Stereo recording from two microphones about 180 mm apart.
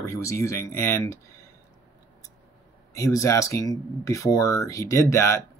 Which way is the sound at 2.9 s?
20° left (ahead or behind).